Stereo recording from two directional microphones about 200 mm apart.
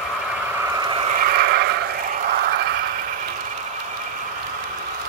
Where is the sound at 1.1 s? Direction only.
45° right (ahead or behind).